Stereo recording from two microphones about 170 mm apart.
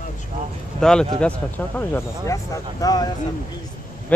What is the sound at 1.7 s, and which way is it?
Speech, 15° left (ahead or behind).